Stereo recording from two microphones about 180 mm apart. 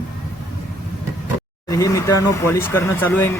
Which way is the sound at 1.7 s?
15° left (ahead or behind).